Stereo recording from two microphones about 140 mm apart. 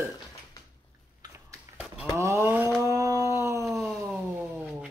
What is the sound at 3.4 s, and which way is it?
Dog, 20° right (ahead or behind).